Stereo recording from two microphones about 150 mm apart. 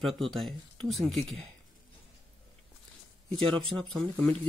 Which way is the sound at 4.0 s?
5° left (ahead or behind).